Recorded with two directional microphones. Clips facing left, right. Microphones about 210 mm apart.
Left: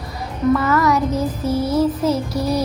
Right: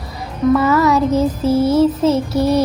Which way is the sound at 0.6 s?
25° right (ahead or behind).